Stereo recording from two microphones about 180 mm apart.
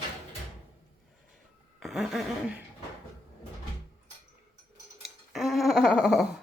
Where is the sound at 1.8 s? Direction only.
Centre (ahead or behind).